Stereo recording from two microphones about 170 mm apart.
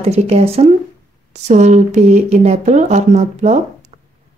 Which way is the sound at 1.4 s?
40° right (ahead or behind).